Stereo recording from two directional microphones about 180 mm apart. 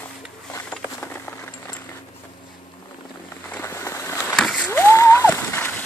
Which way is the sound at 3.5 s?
15° left (ahead or behind).